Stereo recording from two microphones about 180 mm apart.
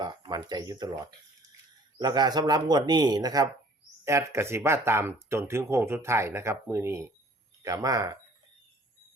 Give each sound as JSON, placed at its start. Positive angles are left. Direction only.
{"t": 0.0, "sound": "speech", "side_deg": -25}